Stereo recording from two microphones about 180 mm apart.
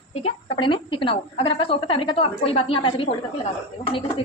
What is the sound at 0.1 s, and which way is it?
A woman's voice, 35° left (ahead or behind).